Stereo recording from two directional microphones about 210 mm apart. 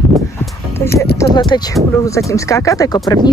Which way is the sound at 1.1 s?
20° left (ahead or behind).